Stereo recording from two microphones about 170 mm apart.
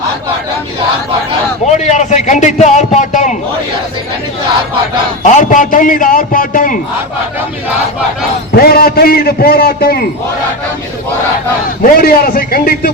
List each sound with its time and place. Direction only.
1.6 s a man's voice: 45° left (ahead or behind)
5.4 s a man's voice: 50° left (ahead or behind)
8.6 s a man's voice: 65° left (ahead or behind)
11.8 s a man's voice: 60° left (ahead or behind)